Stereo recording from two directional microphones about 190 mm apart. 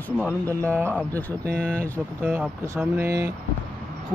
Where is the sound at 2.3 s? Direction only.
15° right (ahead or behind).